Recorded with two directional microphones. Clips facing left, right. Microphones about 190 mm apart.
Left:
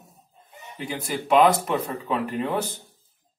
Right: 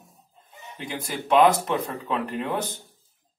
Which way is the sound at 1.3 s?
5° left (ahead or behind).